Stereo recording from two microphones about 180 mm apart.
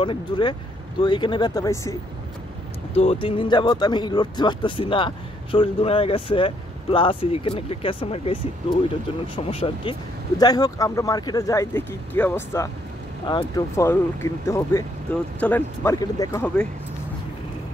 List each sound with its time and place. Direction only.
0.0 s speech: 25° left (ahead or behind)
3.0 s speech: 30° left (ahead or behind); by 12.7 s 15° left (ahead or behind)
13.3 s speech: 25° left (ahead or behind)
13.7 s speech: 15° left (ahead or behind)